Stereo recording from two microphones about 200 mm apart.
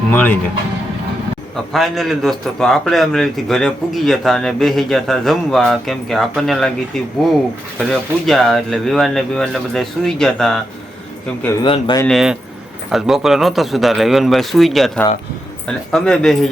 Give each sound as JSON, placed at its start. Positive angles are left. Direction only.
{"t": 0.1, "sound": "speech", "side_deg": 10}
{"t": 1.7, "sound": "a man's voice", "side_deg": 0}
{"t": 11.6, "sound": "speech", "side_deg": 25}
{"t": 12.0, "sound": "a man's voice", "side_deg": 0}